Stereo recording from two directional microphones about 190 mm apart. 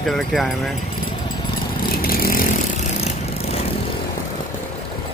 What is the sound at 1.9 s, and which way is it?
Vehicle, 50° left (ahead or behind).